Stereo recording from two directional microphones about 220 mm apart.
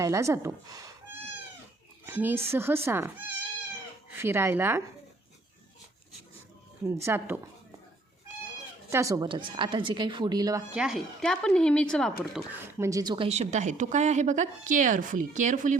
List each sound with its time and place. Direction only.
0.0 s speech: 15° right (ahead or behind)
2.0 s speech: 10° right (ahead or behind)
6.8 s speech: 10° right (ahead or behind)
8.9 s a woman's voice: 15° right (ahead or behind)
10.8 s speech: centre (ahead or behind)
12.8 s speech: 15° right (ahead or behind); by 15.8 s 35° right (ahead or behind)